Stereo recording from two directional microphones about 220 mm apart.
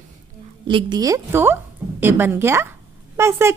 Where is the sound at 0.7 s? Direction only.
20° right (ahead or behind).